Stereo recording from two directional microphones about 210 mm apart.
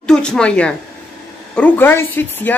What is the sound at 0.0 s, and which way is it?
A woman's voice, 5° left (ahead or behind).